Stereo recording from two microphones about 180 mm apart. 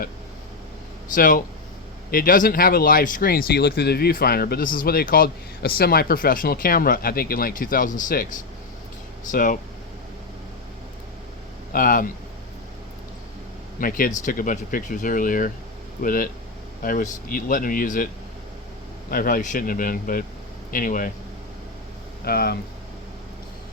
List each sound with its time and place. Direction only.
1.1 s speech: 50° left (ahead or behind)
9.3 s speech: 45° left (ahead or behind)
11.7 s speech: 50° left (ahead or behind)
13.7 s speech: 50° left (ahead or behind)
19.1 s speech: 50° left (ahead or behind)
22.2 s speech: 60° left (ahead or behind)